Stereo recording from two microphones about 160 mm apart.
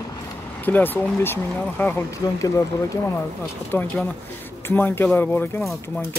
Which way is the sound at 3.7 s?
15° left (ahead or behind).